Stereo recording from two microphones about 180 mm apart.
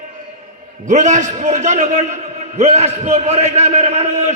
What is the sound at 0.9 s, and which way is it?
A man's voice, 40° right (ahead or behind).